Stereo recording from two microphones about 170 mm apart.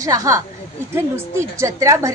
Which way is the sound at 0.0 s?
20° right (ahead or behind).